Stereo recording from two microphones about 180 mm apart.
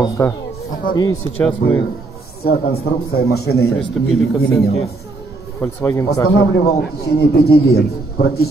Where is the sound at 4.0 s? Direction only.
Centre (ahead or behind).